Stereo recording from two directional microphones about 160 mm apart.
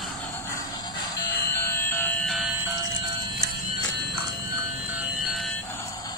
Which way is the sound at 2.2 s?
Centre (ahead or behind).